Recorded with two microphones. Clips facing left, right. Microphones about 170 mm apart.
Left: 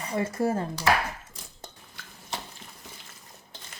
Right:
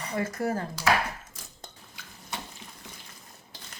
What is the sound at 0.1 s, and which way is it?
Speech, 25° left (ahead or behind).